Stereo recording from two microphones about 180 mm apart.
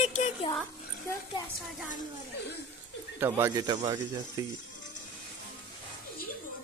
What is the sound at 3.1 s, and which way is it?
Speech, 10° right (ahead or behind).